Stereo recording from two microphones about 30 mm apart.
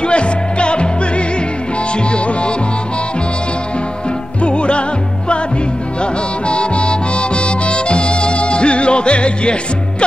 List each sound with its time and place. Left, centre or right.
0.0 s music: left
4.4 s music: left
6.4 s music: left